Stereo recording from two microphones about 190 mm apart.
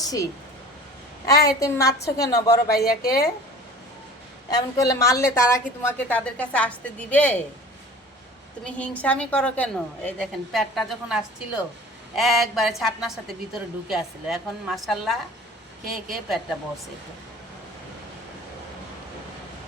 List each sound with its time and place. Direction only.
0.0 s a woman's voice: 20° left (ahead or behind)
2.7 s a woman's voice: 55° left (ahead or behind)
4.5 s a woman's voice: 15° left (ahead or behind)
8.6 s a woman's voice: 5° left (ahead or behind)